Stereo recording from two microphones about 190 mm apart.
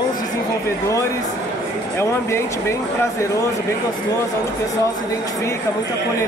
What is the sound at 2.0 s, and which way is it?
Speech, 15° left (ahead or behind).